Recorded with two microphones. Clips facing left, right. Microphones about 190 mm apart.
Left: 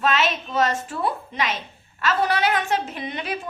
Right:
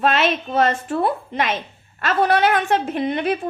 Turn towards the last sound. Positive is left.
turn(degrees=-55)  # may be behind; listen again after turning